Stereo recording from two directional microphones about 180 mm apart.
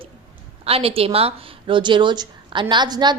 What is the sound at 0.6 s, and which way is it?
A woman's voice, 30° right (ahead or behind).